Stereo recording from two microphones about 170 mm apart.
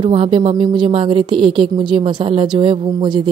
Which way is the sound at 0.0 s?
30° right (ahead or behind).